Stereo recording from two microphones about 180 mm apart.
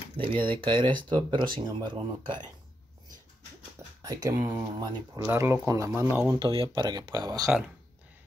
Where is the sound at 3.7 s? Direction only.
20° right (ahead or behind).